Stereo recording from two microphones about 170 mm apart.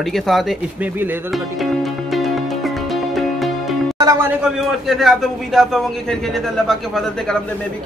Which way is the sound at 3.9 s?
20° right (ahead or behind).